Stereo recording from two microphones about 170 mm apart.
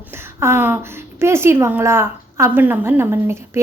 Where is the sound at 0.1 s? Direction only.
15° right (ahead or behind).